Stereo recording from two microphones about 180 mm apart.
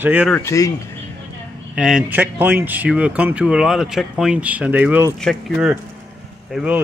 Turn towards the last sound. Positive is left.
turn(degrees=-5)  # may be behind; listen again after turning